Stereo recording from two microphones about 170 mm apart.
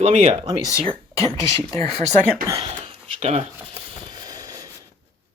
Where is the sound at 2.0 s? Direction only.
45° right (ahead or behind).